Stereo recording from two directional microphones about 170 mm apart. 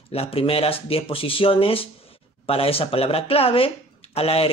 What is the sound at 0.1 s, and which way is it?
Speech, 35° left (ahead or behind).